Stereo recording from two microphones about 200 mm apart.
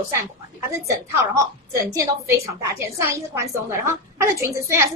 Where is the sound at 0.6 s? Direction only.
15° right (ahead or behind).